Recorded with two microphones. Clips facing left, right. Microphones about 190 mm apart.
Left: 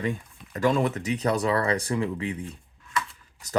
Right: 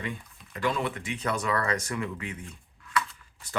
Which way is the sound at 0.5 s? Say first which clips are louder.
Left 6 dB; 45° left (ahead or behind).